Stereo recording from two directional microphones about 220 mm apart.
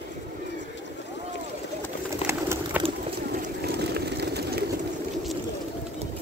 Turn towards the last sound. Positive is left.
turn(degrees=-45)  # may be behind; listen again after turning